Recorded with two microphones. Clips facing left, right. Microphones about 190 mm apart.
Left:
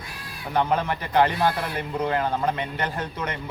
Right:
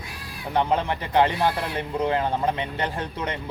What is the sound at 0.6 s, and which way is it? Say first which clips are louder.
Speech: even; 25° right (ahead or behind).